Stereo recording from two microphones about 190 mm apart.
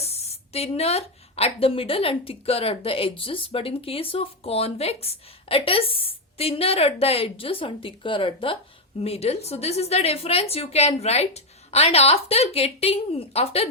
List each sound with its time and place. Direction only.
0.0 s a woman's voice: 35° left (ahead or behind)